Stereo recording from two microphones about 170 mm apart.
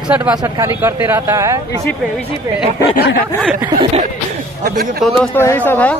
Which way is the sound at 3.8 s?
35° right (ahead or behind).